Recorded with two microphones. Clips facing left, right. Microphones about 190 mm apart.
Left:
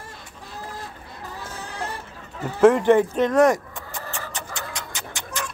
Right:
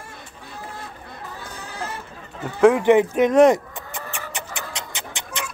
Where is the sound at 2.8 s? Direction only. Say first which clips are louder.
Right 2 dB; 15° right (ahead or behind).